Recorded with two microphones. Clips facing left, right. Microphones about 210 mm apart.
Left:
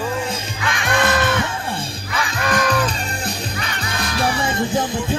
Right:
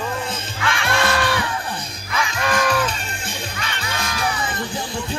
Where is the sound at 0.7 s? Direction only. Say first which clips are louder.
Left 2 dB; 20° left (ahead or behind).